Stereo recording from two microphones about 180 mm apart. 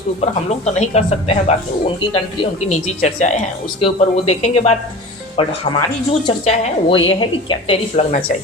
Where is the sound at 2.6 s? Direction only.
40° left (ahead or behind).